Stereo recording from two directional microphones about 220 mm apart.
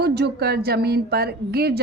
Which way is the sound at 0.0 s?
50° right (ahead or behind).